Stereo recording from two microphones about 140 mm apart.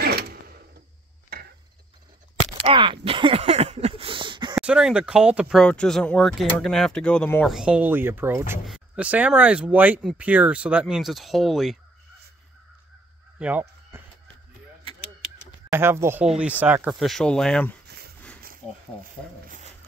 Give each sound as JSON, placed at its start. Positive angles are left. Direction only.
{"t": 1.3, "sound": "a sound", "side_deg": -90}
{"t": 2.5, "sound": "a sound", "side_deg": -40}
{"t": 4.6, "sound": "speech", "side_deg": -5}
{"t": 7.4, "sound": "speech", "side_deg": -5}
{"t": 8.6, "sound": "speech", "side_deg": -5}
{"t": 13.4, "sound": "fowl", "side_deg": -10}
{"t": 15.7, "sound": "speech", "side_deg": -15}
{"t": 17.0, "sound": "speech", "side_deg": 5}